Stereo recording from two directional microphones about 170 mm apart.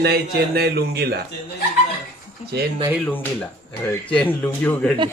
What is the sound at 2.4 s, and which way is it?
Speech, 45° left (ahead or behind).